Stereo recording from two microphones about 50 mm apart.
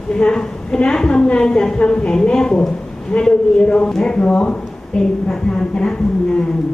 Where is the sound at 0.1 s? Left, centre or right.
Centre.